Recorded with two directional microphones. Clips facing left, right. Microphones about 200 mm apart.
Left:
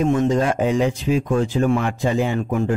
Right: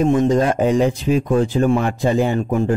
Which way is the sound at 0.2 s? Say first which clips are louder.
Right 3 dB; 35° right (ahead or behind).